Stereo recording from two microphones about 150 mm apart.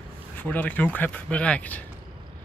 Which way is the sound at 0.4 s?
10° left (ahead or behind).